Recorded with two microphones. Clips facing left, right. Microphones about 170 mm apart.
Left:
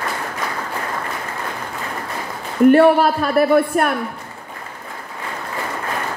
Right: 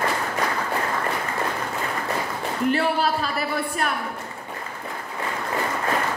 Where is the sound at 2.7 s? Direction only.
55° left (ahead or behind).